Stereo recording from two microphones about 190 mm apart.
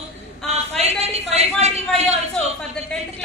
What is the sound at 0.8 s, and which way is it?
A woman's voice, 35° right (ahead or behind).